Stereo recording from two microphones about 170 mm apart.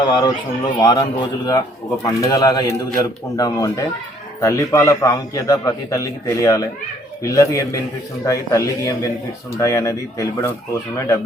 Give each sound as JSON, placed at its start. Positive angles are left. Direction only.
{"t": 0.1, "sound": "a man's voice", "side_deg": 25}